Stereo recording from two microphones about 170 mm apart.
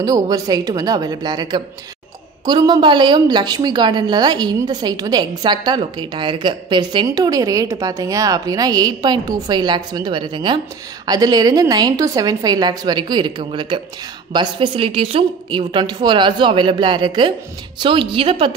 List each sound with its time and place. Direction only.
0.0 s a woman's voice: 20° right (ahead or behind)